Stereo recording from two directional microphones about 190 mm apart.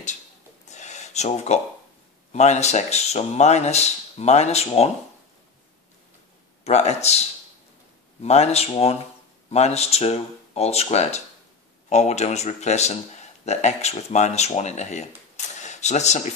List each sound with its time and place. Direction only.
0.7 s a sound: 35° left (ahead or behind)
2.3 s speech: 35° left (ahead or behind)
6.6 s speech: 35° left (ahead or behind)